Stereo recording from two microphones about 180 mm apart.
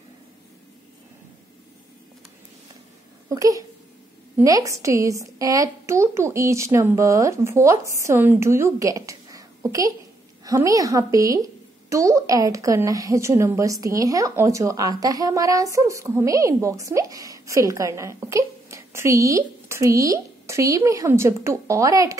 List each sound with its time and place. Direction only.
3.3 s a woman's voice: 20° right (ahead or behind)